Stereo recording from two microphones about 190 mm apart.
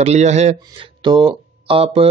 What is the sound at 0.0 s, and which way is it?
Speech, 35° right (ahead or behind).